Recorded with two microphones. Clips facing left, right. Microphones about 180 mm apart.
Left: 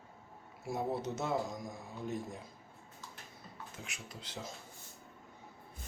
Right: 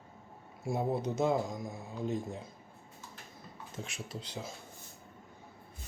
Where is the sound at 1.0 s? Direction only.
15° right (ahead or behind).